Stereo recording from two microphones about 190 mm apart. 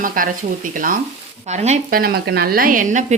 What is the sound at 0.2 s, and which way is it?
Speech, 45° right (ahead or behind).